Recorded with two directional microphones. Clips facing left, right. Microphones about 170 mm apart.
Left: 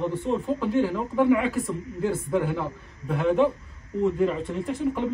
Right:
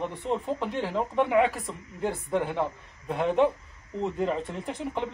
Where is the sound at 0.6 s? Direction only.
25° right (ahead or behind).